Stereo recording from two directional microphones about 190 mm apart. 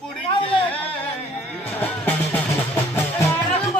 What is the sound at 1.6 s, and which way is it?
Music, 10° left (ahead or behind).